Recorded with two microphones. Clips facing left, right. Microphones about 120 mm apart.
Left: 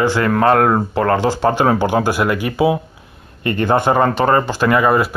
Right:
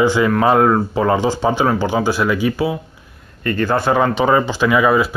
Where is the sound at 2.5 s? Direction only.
20° left (ahead or behind).